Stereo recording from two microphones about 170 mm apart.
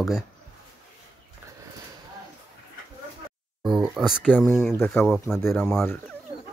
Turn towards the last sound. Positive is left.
turn(degrees=10)  # may be behind; listen again after turning